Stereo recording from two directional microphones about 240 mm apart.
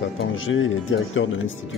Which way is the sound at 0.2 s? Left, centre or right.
Left.